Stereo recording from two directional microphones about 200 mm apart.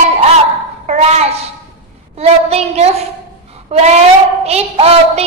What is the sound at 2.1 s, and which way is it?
A woman's voice, 30° right (ahead or behind).